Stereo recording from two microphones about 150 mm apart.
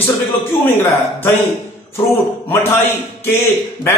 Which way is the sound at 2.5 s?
15° left (ahead or behind).